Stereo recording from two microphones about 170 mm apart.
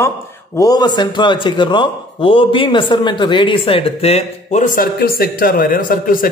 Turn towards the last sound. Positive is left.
turn(degrees=55)  # may be behind; listen again after turning